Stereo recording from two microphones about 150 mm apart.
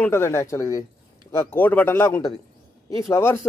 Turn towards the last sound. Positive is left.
turn(degrees=15)  # may be behind; listen again after turning